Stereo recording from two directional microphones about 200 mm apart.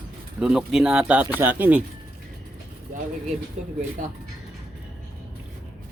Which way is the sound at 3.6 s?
35° right (ahead or behind).